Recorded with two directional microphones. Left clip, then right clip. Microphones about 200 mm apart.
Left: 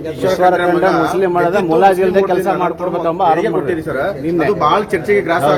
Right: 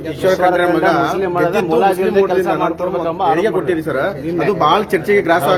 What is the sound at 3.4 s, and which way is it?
Speech, 20° right (ahead or behind).